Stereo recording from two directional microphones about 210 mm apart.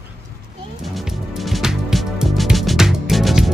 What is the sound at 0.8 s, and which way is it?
Music, centre (ahead or behind).